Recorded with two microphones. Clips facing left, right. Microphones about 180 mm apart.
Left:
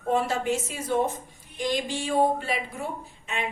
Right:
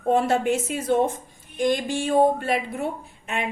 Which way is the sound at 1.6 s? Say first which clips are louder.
Right 5 dB; 50° right (ahead or behind).